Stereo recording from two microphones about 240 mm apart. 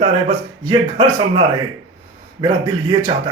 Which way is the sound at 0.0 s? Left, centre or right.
Right.